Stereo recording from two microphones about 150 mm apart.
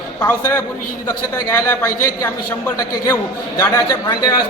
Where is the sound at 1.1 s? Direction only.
20° left (ahead or behind).